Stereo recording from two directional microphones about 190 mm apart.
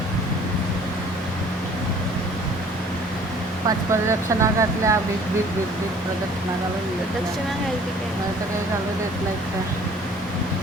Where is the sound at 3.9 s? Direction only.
15° right (ahead or behind).